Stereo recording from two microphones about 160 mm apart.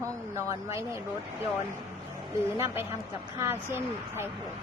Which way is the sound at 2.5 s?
15° right (ahead or behind).